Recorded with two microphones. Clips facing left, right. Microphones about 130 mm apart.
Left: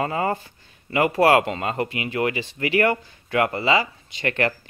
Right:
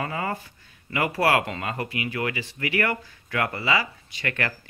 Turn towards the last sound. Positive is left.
turn(degrees=25)  # may be behind; listen again after turning